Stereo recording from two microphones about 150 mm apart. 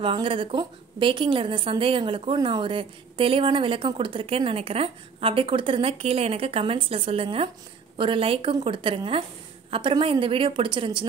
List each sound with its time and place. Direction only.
0.0 s a woman's voice: 35° right (ahead or behind)